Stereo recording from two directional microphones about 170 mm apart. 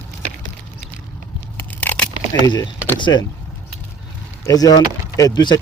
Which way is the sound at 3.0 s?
25° left (ahead or behind).